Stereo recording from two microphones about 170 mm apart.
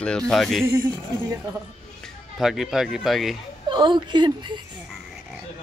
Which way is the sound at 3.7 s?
25° right (ahead or behind).